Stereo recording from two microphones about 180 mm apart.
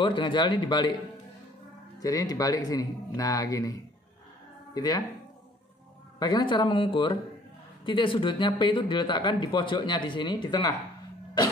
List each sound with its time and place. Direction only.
0.0 s speech: 25° left (ahead or behind)
2.0 s speech: 20° left (ahead or behind)
6.1 s speech: 25° left (ahead or behind)